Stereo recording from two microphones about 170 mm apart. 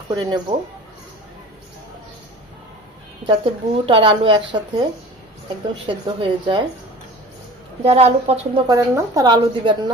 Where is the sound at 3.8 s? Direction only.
30° right (ahead or behind).